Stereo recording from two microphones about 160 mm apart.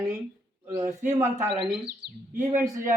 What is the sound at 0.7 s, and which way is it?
Speech, 20° right (ahead or behind).